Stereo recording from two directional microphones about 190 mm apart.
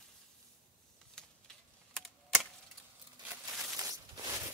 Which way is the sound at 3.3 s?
5° right (ahead or behind).